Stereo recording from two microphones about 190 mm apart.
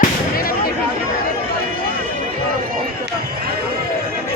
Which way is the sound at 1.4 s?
50° right (ahead or behind).